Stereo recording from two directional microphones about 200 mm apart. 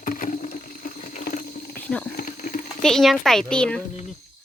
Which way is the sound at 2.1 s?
45° left (ahead or behind).